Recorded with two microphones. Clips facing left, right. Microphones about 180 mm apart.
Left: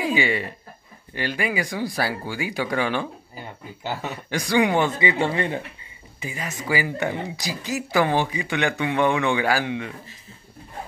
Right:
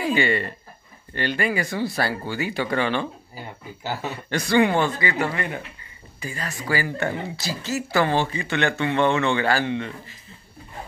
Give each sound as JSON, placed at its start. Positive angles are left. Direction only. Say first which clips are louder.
{"t": 0.0, "sound": "speech", "louder": "right 1 dB", "side_deg": 5}
{"t": 4.3, "sound": "speech", "louder": "right 1 dB", "side_deg": 10}